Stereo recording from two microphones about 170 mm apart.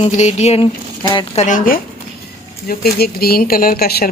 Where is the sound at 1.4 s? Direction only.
50° left (ahead or behind).